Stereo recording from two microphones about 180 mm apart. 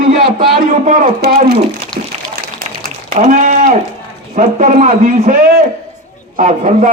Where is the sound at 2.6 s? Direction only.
55° right (ahead or behind).